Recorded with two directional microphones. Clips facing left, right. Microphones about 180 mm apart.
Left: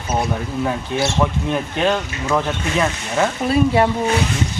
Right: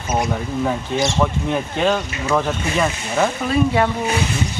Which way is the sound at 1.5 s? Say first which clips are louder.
Even; 10° right (ahead or behind).